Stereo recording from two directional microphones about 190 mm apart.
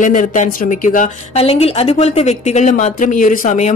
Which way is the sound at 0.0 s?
45° left (ahead or behind).